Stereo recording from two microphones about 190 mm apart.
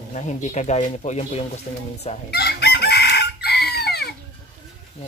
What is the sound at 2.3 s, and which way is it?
Chicken, 55° left (ahead or behind).